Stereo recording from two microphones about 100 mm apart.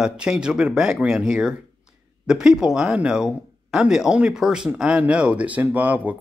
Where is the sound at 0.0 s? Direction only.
10° right (ahead or behind).